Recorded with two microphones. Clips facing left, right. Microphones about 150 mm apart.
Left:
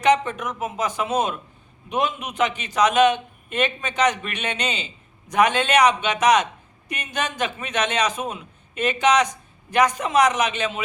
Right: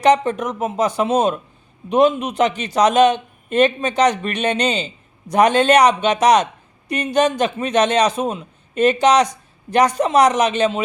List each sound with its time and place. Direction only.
0.0 s speech: 35° right (ahead or behind)